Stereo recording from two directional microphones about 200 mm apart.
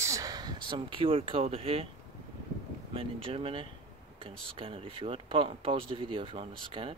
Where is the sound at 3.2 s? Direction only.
25° right (ahead or behind).